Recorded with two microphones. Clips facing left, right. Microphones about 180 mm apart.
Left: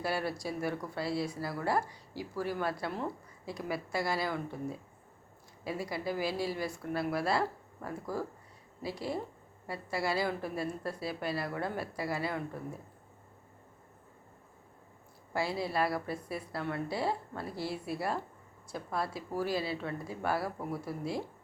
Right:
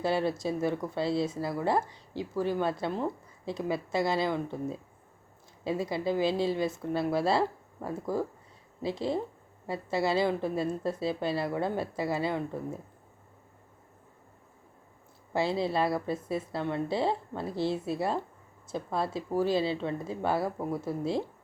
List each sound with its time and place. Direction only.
0.0 s speech: 25° right (ahead or behind)
15.3 s speech: 25° right (ahead or behind)